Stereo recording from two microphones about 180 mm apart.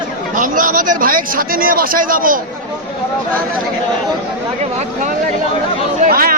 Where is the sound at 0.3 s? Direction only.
50° right (ahead or behind).